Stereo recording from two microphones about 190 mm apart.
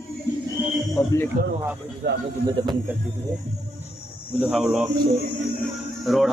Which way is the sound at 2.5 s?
20° right (ahead or behind).